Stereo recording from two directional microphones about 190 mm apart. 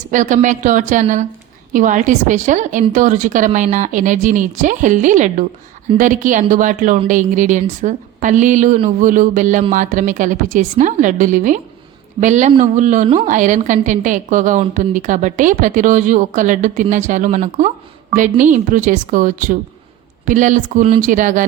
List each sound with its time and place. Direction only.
0.1 s a woman's voice: 40° right (ahead or behind)